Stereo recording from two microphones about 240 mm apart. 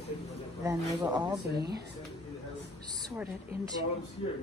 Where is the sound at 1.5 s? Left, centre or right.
Right.